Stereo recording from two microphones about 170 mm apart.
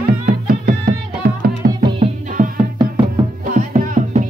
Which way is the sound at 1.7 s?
25° right (ahead or behind).